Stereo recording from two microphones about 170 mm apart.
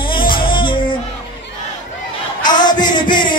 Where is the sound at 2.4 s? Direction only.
25° left (ahead or behind).